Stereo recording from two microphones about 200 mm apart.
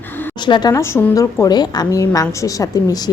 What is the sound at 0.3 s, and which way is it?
A woman's voice, 20° left (ahead or behind).